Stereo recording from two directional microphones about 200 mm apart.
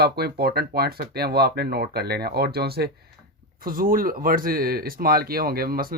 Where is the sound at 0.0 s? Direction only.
50° right (ahead or behind).